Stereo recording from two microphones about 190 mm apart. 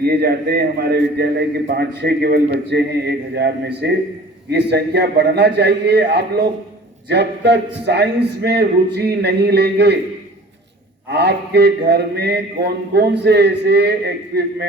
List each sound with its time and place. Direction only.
0.0 s a man's voice: 55° right (ahead or behind)
11.1 s a man's voice: 60° right (ahead or behind)